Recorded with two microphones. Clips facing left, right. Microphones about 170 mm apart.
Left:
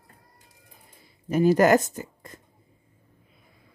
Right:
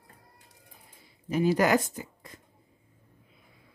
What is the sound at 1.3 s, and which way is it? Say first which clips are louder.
Speech: left 5 dB; 45° left (ahead or behind).